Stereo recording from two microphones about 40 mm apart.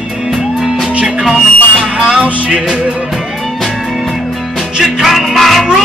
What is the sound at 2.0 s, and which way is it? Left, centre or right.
Music, right.